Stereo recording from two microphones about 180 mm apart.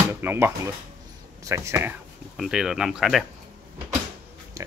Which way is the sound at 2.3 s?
Centre (ahead or behind).